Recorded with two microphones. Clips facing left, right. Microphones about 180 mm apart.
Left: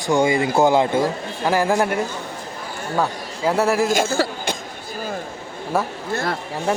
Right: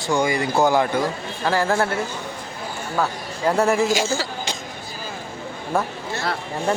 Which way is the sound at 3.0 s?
5° left (ahead or behind).